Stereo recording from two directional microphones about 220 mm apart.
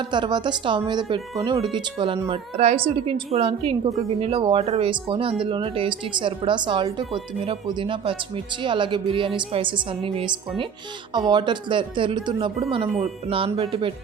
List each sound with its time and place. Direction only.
0.1 s speech: 20° right (ahead or behind)